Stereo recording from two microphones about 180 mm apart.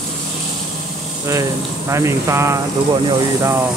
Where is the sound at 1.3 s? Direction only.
15° right (ahead or behind).